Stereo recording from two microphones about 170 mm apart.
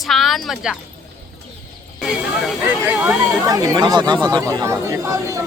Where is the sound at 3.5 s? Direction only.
20° right (ahead or behind).